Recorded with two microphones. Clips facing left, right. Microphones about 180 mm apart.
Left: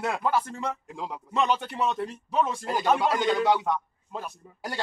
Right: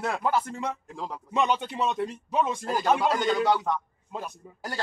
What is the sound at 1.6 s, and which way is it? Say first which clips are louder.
Speech: even; 15° right (ahead or behind).